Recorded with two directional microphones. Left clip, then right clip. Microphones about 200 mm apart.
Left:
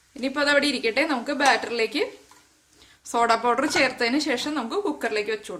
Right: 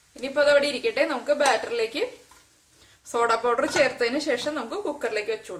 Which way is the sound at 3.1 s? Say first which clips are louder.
Left 2 dB; 50° left (ahead or behind).